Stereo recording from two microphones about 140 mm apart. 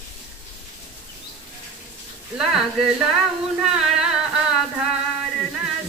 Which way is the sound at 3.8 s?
5° right (ahead or behind).